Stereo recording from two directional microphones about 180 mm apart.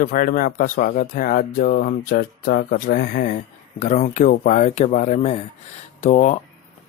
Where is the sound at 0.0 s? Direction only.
50° left (ahead or behind).